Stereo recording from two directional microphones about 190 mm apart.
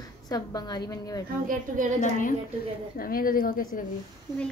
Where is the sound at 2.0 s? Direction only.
45° left (ahead or behind).